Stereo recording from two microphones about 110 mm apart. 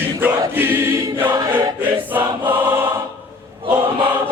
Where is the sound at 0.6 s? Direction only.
20° right (ahead or behind).